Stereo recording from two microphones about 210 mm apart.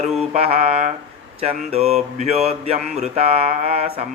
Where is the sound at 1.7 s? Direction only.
30° right (ahead or behind).